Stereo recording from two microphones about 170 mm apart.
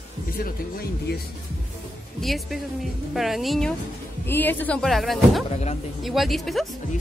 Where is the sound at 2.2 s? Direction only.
Centre (ahead or behind).